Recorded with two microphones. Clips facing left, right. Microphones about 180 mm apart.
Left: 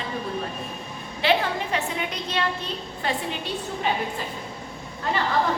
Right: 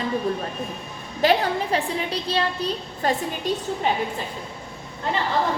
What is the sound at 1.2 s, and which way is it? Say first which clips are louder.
A woman's voice: right 3 dB; 40° right (ahead or behind).